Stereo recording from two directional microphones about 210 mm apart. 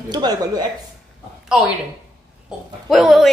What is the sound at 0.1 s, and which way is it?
Speech, 20° right (ahead or behind).